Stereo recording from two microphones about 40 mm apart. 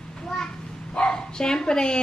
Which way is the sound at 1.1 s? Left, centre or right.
Centre.